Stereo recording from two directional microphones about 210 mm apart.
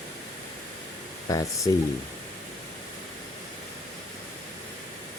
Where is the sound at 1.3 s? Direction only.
15° left (ahead or behind).